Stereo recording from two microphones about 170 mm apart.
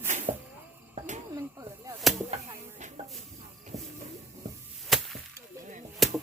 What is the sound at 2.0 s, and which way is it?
Chop, centre (ahead or behind).